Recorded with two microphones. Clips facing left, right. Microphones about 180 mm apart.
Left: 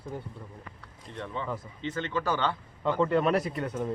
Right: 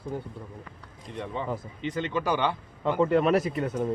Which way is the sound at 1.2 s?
15° right (ahead or behind).